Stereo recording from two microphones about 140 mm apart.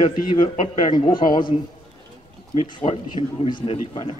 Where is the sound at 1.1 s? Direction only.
35° left (ahead or behind).